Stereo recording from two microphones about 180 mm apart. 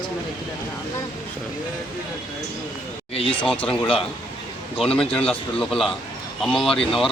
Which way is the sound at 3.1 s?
30° left (ahead or behind).